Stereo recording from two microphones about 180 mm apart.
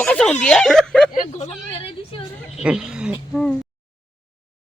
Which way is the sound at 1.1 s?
40° left (ahead or behind).